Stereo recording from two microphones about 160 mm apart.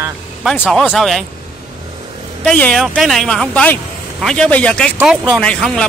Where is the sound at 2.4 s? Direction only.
5° left (ahead or behind).